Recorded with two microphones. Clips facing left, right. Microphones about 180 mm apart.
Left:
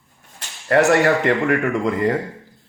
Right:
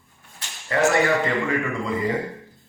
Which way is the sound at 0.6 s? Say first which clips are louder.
Left 5 dB; 65° left (ahead or behind).